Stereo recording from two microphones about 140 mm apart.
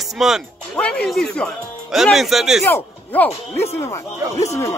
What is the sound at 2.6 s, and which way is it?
Speech, 15° left (ahead or behind).